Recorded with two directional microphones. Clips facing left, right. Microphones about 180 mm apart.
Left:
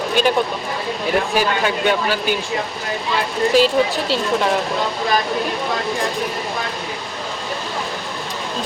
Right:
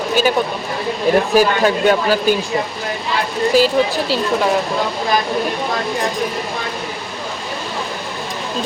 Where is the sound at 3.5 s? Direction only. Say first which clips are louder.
Right 1 dB; 5° right (ahead or behind).